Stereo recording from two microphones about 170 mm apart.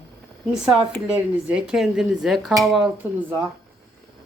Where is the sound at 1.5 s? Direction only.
5° right (ahead or behind).